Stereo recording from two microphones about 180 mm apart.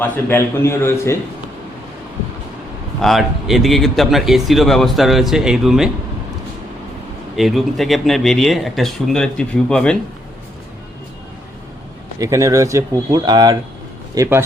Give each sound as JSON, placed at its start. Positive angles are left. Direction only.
{"t": 0.0, "sound": "a man's voice", "side_deg": 15}
{"t": 3.0, "sound": "speech", "side_deg": 0}
{"t": 7.3, "sound": "speech", "side_deg": 0}
{"t": 12.2, "sound": "speech", "side_deg": -15}